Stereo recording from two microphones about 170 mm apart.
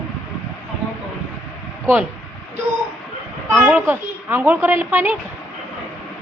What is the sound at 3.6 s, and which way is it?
A woman's voice, 10° right (ahead or behind).